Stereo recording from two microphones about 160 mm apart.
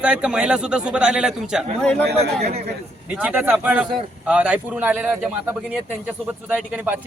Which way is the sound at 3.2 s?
10° right (ahead or behind).